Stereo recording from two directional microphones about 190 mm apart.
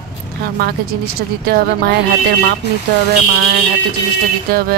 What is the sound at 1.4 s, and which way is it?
Speech, 55° right (ahead or behind).